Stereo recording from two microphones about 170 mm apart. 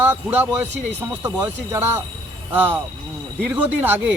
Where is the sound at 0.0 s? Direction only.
10° right (ahead or behind).